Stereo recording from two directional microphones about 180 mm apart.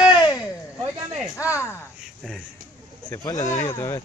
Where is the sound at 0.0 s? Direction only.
25° left (ahead or behind).